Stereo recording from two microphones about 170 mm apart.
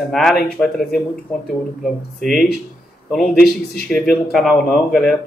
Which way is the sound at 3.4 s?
65° left (ahead or behind).